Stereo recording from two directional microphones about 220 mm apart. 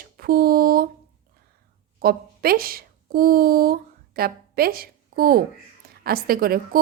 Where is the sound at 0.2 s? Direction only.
40° right (ahead or behind).